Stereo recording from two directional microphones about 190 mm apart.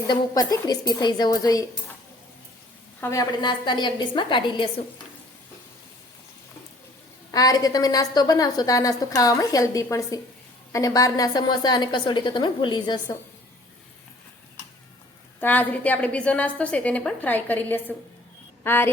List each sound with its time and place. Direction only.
0.1 s a woman's voice: 20° left (ahead or behind)
3.0 s a woman's voice: 15° left (ahead or behind)
7.3 s a woman's voice: 20° left (ahead or behind)
15.4 s a woman's voice: 10° left (ahead or behind)
18.6 s a sound: 10° left (ahead or behind)